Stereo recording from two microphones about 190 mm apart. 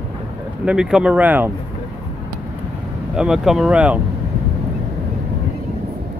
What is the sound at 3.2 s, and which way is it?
Speech, 5° right (ahead or behind).